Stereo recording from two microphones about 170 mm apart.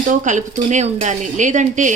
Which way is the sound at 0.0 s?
50° right (ahead or behind).